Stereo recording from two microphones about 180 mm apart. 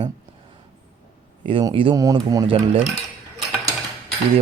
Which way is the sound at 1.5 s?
30° right (ahead or behind).